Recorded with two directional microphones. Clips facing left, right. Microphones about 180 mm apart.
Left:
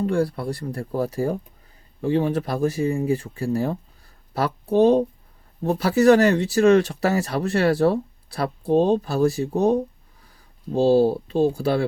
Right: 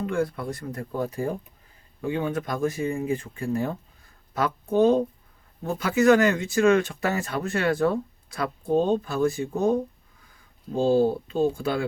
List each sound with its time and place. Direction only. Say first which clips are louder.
0.0 s speech: left 4 dB; 35° left (ahead or behind)